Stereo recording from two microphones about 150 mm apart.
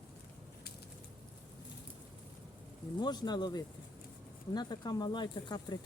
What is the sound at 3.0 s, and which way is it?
Speech, 30° left (ahead or behind).